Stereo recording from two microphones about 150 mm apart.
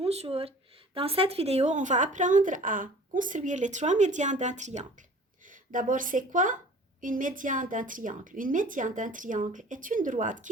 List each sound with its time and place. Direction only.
0.0 s a sound: 45° right (ahead or behind)
0.9 s a woman's voice: 40° right (ahead or behind)
5.7 s a woman's voice: 60° right (ahead or behind)